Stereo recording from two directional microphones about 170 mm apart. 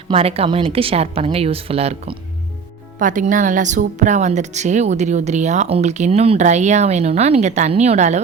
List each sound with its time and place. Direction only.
0.1 s speech: 35° right (ahead or behind)
3.0 s speech: 50° right (ahead or behind)